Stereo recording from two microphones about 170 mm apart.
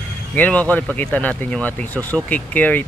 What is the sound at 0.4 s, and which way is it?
Speech, 10° left (ahead or behind).